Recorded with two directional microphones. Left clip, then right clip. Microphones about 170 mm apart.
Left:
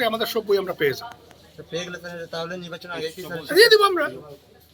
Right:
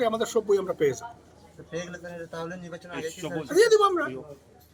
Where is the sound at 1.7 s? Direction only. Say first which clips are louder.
Left 5 dB; 75° left (ahead or behind).